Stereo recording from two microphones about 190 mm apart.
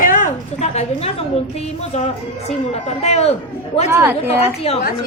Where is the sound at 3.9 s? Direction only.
10° right (ahead or behind).